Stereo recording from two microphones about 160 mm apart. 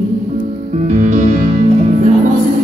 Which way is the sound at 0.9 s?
50° right (ahead or behind).